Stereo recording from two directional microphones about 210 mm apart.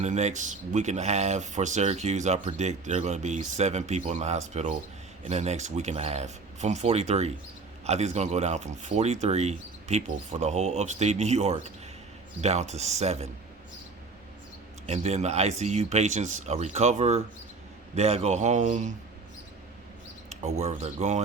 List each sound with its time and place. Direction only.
0.0 s speech: 35° right (ahead or behind)
14.8 s speech: 30° right (ahead or behind)
20.3 s speech: 30° right (ahead or behind)